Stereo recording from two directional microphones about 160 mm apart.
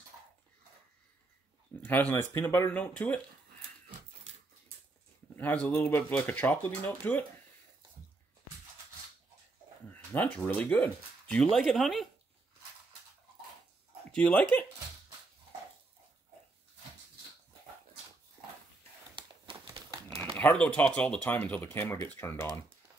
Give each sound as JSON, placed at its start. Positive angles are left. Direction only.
{"t": 1.8, "sound": "speech", "side_deg": 10}
{"t": 5.3, "sound": "speech", "side_deg": 10}
{"t": 10.1, "sound": "speech", "side_deg": 10}
{"t": 14.1, "sound": "speech", "side_deg": 5}
{"t": 19.1, "sound": "crumpling", "side_deg": -30}
{"t": 20.3, "sound": "speech", "side_deg": 10}